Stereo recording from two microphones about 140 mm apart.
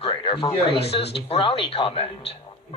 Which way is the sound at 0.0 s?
40° left (ahead or behind).